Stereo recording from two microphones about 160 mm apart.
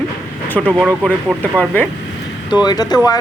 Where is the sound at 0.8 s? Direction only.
5° right (ahead or behind).